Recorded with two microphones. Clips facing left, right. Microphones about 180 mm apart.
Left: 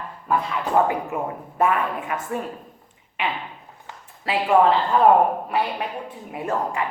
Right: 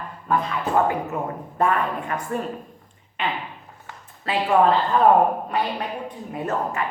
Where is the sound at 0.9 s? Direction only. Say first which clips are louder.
Even; 10° left (ahead or behind).